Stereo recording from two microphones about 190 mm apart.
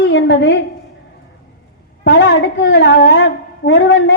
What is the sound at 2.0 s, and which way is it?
A woman's voice, 65° left (ahead or behind).